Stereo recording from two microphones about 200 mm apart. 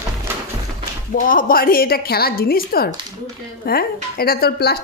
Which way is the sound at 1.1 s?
45° left (ahead or behind).